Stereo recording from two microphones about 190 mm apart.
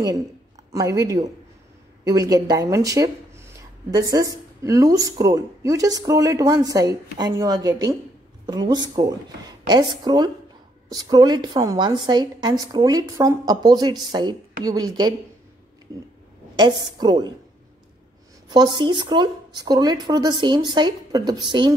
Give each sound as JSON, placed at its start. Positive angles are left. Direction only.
{"t": 0.7, "sound": "speech", "side_deg": -15}
{"t": 16.5, "sound": "speech", "side_deg": -25}
{"t": 18.5, "sound": "speech", "side_deg": -20}